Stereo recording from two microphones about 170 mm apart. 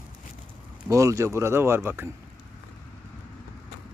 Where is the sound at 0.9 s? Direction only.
20° right (ahead or behind).